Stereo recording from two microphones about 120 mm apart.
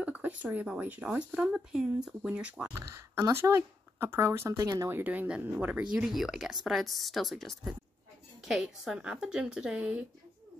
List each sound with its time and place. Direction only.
0.0 s speech: 10° right (ahead or behind)
2.9 s a woman's voice: 25° right (ahead or behind); by 9.9 s 5° right (ahead or behind)